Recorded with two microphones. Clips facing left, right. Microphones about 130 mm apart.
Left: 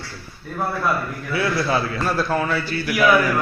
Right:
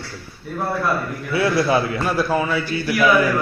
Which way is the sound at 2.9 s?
15° left (ahead or behind).